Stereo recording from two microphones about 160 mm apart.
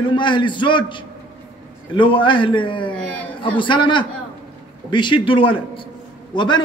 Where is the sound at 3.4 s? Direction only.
30° left (ahead or behind).